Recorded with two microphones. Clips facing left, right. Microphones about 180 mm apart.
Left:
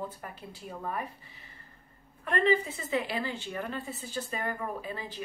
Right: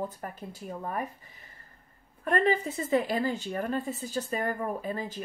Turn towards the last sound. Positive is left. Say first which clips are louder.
# right 4 dB
turn(degrees=-45)  # may be behind; listen again after turning